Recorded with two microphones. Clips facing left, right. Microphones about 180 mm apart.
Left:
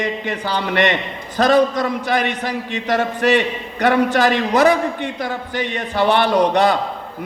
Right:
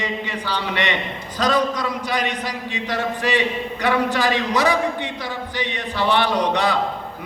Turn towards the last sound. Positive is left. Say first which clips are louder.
# left 5 dB
turn(degrees=50)  # may be behind; listen again after turning